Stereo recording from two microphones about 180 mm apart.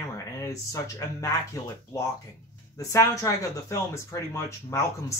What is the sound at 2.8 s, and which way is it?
Speech, 15° left (ahead or behind).